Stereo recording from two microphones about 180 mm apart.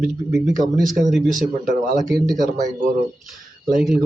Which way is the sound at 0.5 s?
45° right (ahead or behind).